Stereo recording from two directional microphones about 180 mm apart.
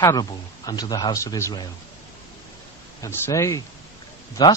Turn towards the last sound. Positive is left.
turn(degrees=25)  # may be behind; listen again after turning